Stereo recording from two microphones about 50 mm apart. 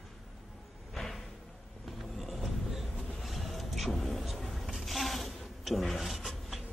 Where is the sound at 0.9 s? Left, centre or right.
Centre.